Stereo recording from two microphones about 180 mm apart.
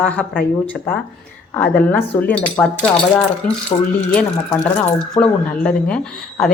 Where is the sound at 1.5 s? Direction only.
10° left (ahead or behind).